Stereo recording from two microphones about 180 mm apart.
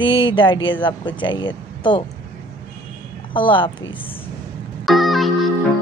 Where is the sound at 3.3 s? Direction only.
25° left (ahead or behind).